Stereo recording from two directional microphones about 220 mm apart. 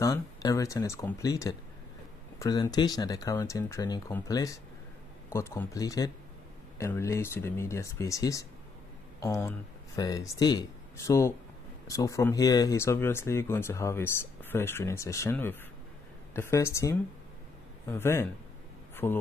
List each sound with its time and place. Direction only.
0.0 s speech: 15° left (ahead or behind)